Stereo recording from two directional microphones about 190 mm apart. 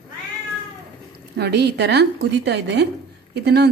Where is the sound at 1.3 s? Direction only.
60° right (ahead or behind).